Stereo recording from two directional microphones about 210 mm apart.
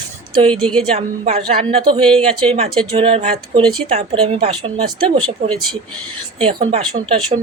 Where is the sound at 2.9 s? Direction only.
25° right (ahead or behind).